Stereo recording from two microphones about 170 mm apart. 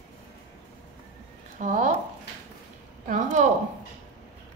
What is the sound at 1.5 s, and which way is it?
Speech, 50° right (ahead or behind).